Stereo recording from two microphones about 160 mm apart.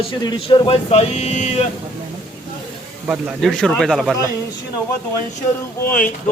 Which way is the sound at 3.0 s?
5° right (ahead or behind).